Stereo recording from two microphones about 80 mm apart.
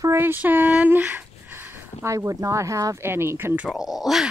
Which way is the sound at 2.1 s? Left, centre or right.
Right.